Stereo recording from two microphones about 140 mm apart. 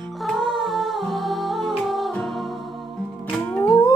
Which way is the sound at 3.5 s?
10° left (ahead or behind).